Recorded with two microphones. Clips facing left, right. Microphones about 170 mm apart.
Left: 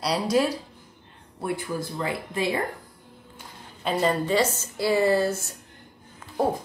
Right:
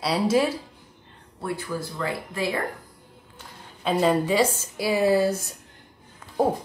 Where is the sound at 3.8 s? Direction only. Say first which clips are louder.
Right 3 dB; 5° right (ahead or behind).